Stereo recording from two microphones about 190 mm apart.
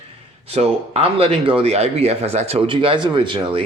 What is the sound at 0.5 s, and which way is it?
Speech, 35° right (ahead or behind).